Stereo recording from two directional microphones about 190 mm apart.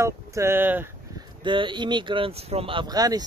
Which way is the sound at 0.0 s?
15° right (ahead or behind).